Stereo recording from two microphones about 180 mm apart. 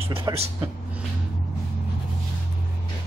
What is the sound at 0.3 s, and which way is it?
Speech, 20° right (ahead or behind).